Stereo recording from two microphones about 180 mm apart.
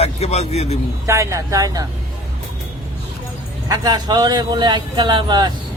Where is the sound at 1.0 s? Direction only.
15° right (ahead or behind).